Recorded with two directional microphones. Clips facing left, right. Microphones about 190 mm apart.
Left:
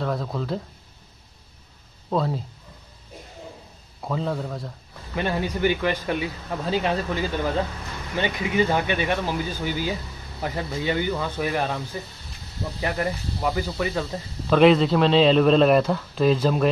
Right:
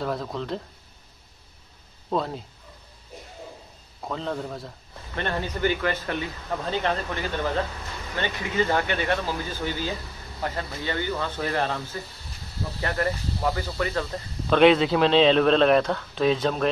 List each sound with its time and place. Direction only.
0.0 s a man's voice: centre (ahead or behind)
2.0 s speech: centre (ahead or behind)
4.0 s speech: 5° left (ahead or behind)
8.2 s speech: 15° left (ahead or behind)
14.1 s a man's voice: centre (ahead or behind)